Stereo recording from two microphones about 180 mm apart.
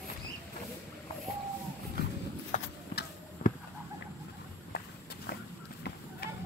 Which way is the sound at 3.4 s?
45° left (ahead or behind).